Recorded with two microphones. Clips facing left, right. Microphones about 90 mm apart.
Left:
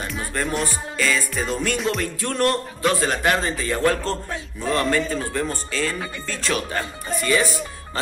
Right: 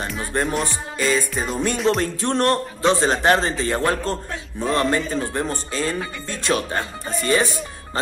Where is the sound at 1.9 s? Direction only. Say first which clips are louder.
Right 4 dB; 30° right (ahead or behind).